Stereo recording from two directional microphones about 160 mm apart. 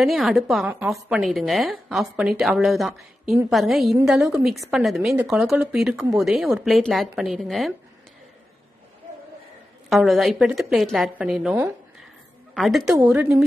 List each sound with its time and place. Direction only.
0.0 s a woman's voice: centre (ahead or behind)
9.8 s a woman's voice: centre (ahead or behind)